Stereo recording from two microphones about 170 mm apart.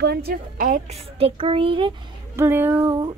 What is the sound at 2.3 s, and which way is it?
Speech, 15° right (ahead or behind).